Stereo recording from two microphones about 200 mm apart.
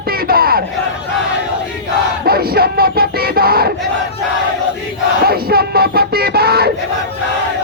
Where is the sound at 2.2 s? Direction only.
50° right (ahead or behind).